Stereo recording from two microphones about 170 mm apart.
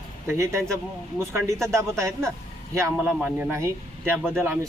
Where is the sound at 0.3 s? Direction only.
15° right (ahead or behind).